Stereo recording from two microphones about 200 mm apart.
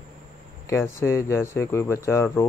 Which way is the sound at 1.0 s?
15° left (ahead or behind).